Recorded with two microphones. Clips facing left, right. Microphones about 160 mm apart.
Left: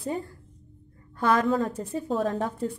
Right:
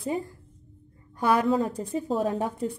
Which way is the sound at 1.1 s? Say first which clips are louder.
Even; 15° right (ahead or behind).